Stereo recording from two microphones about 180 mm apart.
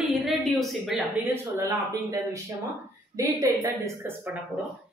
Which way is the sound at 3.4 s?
15° right (ahead or behind).